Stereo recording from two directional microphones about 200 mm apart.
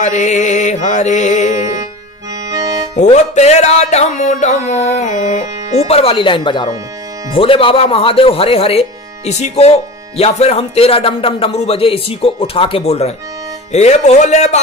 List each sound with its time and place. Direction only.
0.0 s music: 35° left (ahead or behind)
2.5 s accordion: 20° right (ahead or behind)
3.0 s music: 35° left (ahead or behind)
7.3 s speech: 25° left (ahead or behind)
13.7 s music: 35° left (ahead or behind)